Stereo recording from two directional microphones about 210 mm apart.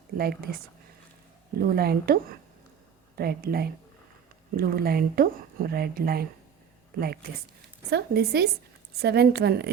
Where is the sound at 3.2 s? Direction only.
45° right (ahead or behind).